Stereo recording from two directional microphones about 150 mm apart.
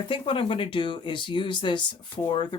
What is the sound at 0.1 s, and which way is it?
Speech, 35° left (ahead or behind).